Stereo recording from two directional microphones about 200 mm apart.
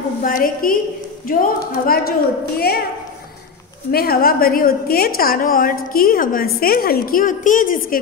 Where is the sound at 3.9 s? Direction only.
50° left (ahead or behind).